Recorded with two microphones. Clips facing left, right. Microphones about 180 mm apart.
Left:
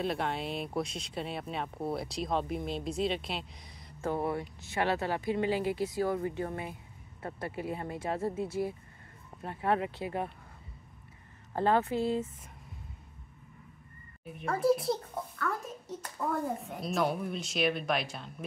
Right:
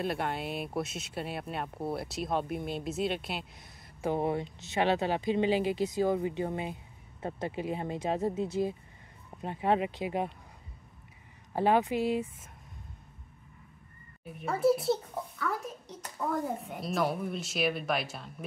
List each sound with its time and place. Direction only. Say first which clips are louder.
0.0 s speech: even; centre (ahead or behind)
4.0 s speech: right 2 dB; 20° right (ahead or behind)
11.5 s speech: right 1 dB; 15° right (ahead or behind)
14.2 s a child's voice: right 1 dB; centre (ahead or behind)